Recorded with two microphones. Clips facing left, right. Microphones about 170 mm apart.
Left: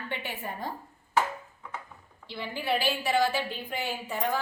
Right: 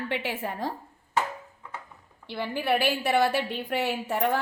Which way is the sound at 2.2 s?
65° right (ahead or behind).